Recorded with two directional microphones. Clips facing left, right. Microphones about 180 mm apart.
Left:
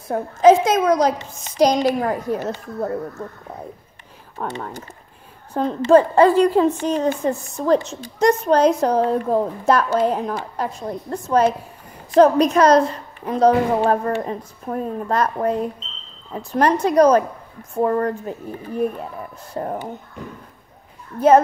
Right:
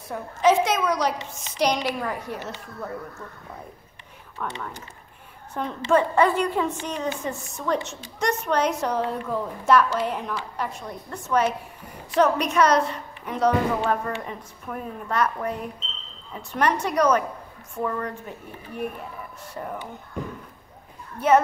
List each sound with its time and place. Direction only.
0.1 s a woman's voice: 45° left (ahead or behind)
4.4 s a woman's voice: 40° left (ahead or behind)
19.5 s a woman's voice: 40° left (ahead or behind)